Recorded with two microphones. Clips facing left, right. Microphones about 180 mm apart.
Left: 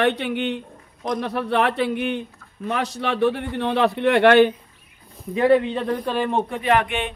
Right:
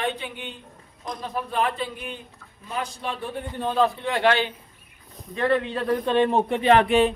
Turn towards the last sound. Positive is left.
turn(degrees=-35)  # may be behind; listen again after turning